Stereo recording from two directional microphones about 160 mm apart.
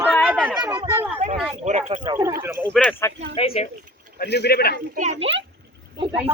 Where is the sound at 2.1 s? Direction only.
15° right (ahead or behind).